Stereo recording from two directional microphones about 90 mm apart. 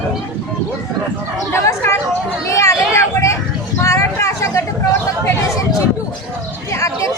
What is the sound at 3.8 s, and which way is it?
Vehicle, 35° left (ahead or behind).